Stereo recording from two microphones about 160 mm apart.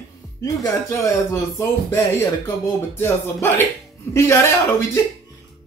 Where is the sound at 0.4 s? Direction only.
20° left (ahead or behind).